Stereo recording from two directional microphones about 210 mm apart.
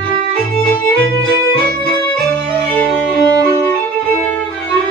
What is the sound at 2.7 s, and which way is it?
Music, 5° left (ahead or behind).